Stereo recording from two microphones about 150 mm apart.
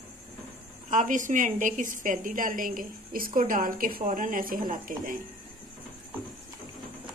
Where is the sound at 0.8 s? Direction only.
60° right (ahead or behind).